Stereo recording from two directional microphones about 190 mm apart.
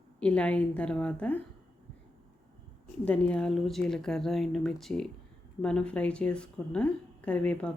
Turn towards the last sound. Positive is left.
turn(degrees=5)  # may be behind; listen again after turning